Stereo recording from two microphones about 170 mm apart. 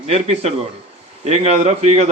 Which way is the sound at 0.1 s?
35° right (ahead or behind).